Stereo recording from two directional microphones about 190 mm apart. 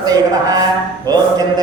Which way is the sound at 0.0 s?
20° right (ahead or behind).